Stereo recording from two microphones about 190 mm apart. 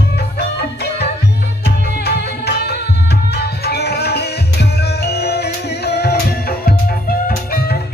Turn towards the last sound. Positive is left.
turn(degrees=55)  # may be behind; listen again after turning